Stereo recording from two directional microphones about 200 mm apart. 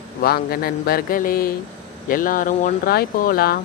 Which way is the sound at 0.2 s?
50° left (ahead or behind).